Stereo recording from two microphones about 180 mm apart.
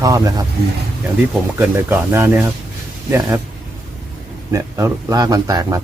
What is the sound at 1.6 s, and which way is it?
A man's voice, 10° right (ahead or behind).